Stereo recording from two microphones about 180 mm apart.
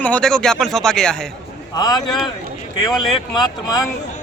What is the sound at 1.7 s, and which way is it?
Speech, 20° left (ahead or behind).